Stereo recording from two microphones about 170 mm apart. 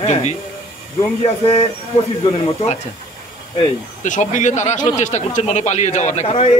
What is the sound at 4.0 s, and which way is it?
A man's voice, 45° left (ahead or behind).